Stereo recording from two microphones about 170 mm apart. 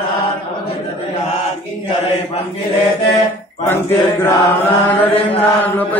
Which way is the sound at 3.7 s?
10° left (ahead or behind).